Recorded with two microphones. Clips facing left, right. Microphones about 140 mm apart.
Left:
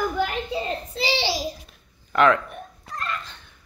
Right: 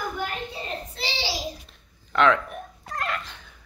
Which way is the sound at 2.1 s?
5° left (ahead or behind).